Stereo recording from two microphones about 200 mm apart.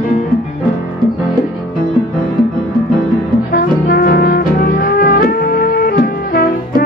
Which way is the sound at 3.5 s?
50° left (ahead or behind).